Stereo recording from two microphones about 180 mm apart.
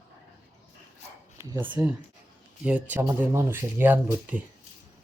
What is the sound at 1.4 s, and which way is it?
Speech, 20° right (ahead or behind).